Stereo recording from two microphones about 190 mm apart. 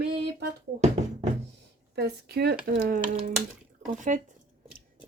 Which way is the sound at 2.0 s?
60° right (ahead or behind).